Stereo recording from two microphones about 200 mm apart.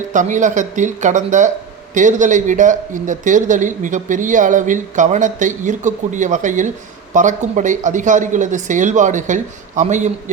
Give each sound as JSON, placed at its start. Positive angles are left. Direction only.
{"t": 0.1, "sound": "a man's voice", "side_deg": -40}